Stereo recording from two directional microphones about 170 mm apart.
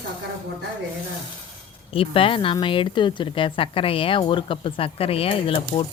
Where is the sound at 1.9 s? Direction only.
30° left (ahead or behind).